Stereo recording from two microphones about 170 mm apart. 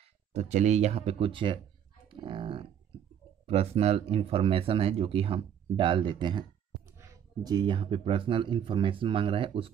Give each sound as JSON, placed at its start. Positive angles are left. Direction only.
{"t": 0.3, "sound": "speech", "side_deg": -40}
{"t": 2.0, "sound": "a sound", "side_deg": -30}
{"t": 3.4, "sound": "speech", "side_deg": -35}